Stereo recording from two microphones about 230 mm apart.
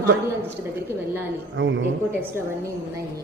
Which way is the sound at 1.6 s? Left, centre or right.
Right.